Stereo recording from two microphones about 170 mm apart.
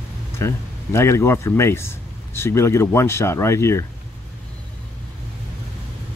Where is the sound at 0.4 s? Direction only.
15° left (ahead or behind).